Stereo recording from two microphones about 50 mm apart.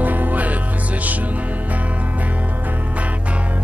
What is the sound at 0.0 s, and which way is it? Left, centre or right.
Music, right.